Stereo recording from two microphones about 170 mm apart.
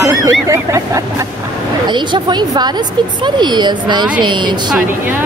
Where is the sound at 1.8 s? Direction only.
25° right (ahead or behind).